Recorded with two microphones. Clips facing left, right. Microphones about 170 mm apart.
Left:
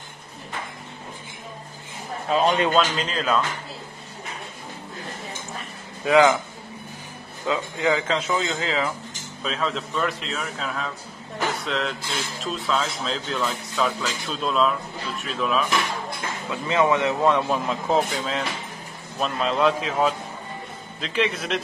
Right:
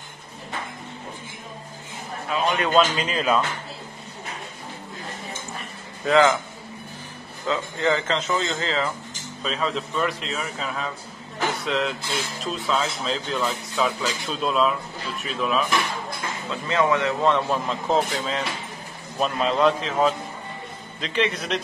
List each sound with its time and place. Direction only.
2.3 s a man's voice: 30° left (ahead or behind)
2.7 s speech: 5° right (ahead or behind)
6.0 s a man's voice: 15° left (ahead or behind)
7.4 s a man's voice: 10° left (ahead or behind)
16.4 s a man's voice: 15° left (ahead or behind); by 21.5 s centre (ahead or behind)